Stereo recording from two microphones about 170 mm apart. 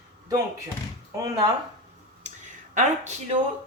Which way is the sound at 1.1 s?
20° right (ahead or behind).